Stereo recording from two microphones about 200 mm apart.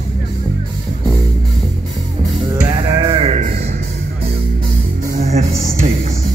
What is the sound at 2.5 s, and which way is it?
Music, 20° right (ahead or behind).